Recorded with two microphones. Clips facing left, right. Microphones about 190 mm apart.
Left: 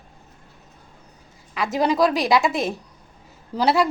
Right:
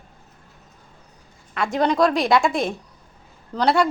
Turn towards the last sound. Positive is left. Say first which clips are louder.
# even
turn(degrees=5)  # may be behind; listen again after turning